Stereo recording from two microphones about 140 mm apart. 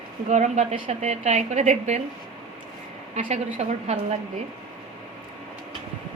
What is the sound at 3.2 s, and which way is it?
A woman's voice, 55° right (ahead or behind).